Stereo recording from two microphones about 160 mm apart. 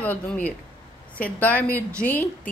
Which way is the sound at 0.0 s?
10° left (ahead or behind).